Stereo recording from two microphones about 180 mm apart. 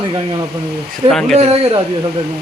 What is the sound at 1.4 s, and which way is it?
Speech, 35° right (ahead or behind).